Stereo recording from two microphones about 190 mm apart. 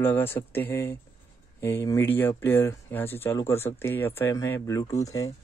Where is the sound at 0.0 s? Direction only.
10° left (ahead or behind).